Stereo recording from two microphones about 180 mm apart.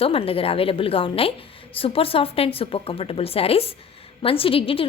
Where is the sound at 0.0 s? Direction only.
30° left (ahead or behind).